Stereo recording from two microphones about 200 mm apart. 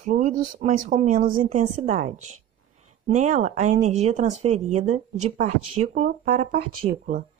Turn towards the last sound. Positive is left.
turn(degrees=-35)  # may be behind; listen again after turning